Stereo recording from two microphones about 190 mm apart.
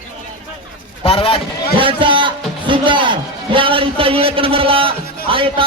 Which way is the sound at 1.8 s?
25° right (ahead or behind).